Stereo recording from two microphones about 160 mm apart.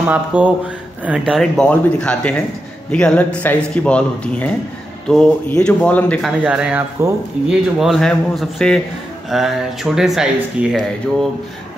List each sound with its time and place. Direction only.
0.1 s speech: 10° right (ahead or behind); by 6.3 s 10° left (ahead or behind)
6.4 s speech: 5° right (ahead or behind)
7.0 s speech: 15° right (ahead or behind)
7.4 s speech: centre (ahead or behind)